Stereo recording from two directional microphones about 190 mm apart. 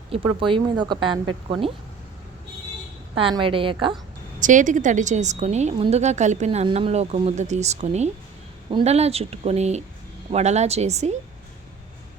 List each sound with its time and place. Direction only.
0.3 s speech: 25° right (ahead or behind)
3.2 s speech: 25° right (ahead or behind)
4.4 s a woman's voice: 40° right (ahead or behind)